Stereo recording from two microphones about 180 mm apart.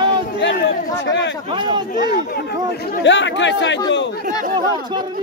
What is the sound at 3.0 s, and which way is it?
Speech, 80° left.